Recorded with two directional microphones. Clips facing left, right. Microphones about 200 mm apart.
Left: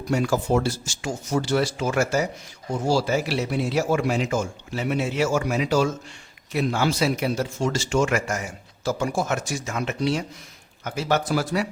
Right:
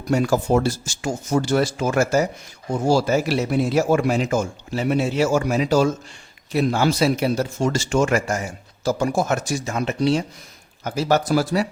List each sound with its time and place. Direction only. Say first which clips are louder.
0.1 s a man's voice: right 3 dB; 45° right (ahead or behind)